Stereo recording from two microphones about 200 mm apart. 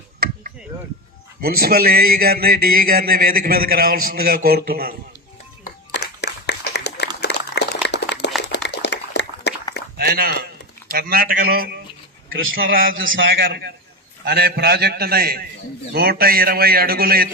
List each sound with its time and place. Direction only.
1.4 s a man's voice: 50° right (ahead or behind)
5.9 s a sound: 60° left (ahead or behind)
7.2 s dog: 55° left (ahead or behind)
7.9 s a sound: 60° left (ahead or behind)
10.0 s a man's voice: 50° right (ahead or behind)
13.1 s a man's voice: 55° right (ahead or behind)